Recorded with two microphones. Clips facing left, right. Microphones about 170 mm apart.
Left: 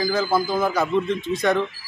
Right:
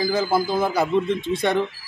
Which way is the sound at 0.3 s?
25° right (ahead or behind).